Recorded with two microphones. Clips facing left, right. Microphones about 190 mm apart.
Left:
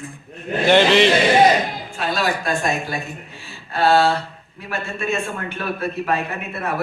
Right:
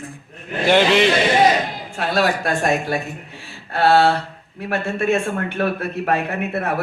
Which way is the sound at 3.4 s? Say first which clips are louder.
Right 1 dB; 70° right (ahead or behind).